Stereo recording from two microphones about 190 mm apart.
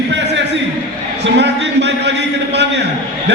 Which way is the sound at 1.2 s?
65° right (ahead or behind).